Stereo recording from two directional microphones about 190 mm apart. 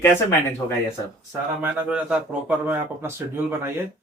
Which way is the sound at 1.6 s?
5° right (ahead or behind).